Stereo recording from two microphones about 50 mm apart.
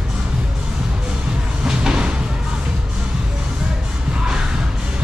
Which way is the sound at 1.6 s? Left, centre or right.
Centre.